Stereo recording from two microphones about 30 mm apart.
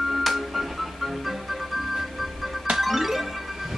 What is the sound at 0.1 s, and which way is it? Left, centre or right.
Music, centre.